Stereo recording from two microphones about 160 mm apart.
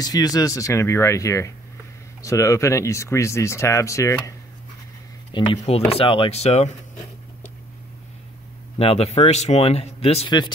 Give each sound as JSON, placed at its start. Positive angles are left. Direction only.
{"t": 0.0, "sound": "speech", "side_deg": 25}
{"t": 5.3, "sound": "speech", "side_deg": 30}
{"t": 8.7, "sound": "speech", "side_deg": 40}